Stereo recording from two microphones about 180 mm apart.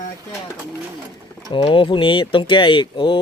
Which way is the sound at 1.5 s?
25° left (ahead or behind).